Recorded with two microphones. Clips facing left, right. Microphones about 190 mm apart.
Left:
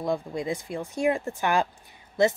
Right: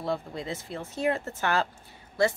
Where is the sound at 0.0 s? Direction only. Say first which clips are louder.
Left 4 dB; 15° left (ahead or behind).